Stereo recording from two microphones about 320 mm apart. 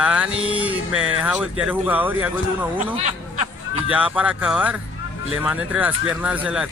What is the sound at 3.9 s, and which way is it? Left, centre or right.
Speech, centre.